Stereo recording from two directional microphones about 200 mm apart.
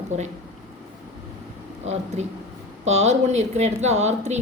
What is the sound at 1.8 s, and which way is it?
Speech, 35° right (ahead or behind).